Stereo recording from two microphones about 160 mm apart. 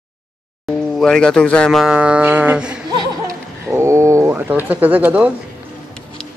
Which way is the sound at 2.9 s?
25° right (ahead or behind).